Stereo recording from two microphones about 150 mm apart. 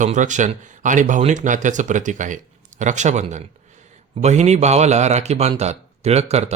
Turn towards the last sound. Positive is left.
turn(degrees=-45)  # may be behind; listen again after turning